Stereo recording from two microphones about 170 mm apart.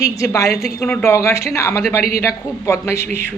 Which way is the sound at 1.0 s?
15° left (ahead or behind).